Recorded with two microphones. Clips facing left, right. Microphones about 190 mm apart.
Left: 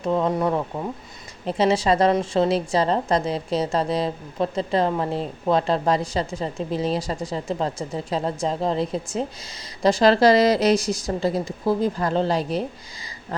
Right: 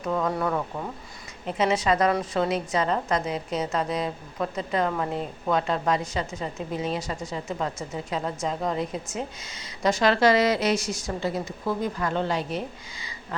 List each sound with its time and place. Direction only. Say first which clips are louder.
0.0 s speech: left 4 dB; 25° left (ahead or behind)
1.5 s a woman's voice: left 4 dB; 30° left (ahead or behind)